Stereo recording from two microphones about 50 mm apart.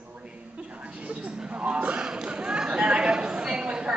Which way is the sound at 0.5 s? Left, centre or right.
Right.